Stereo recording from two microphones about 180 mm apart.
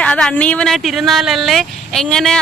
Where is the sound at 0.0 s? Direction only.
5° left (ahead or behind).